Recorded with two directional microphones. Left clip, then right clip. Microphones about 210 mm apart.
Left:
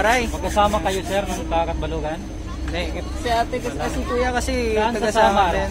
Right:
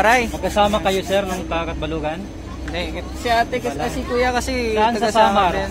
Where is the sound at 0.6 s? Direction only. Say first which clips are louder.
Right 2 dB; 50° right (ahead or behind).